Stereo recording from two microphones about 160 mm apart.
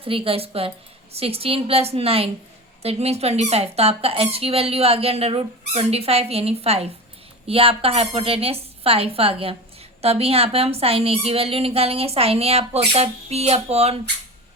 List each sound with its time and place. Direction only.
0.0 s speech: 35° right (ahead or behind)